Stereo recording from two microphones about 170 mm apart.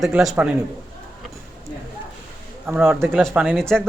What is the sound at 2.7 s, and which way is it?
A man's voice, centre (ahead or behind).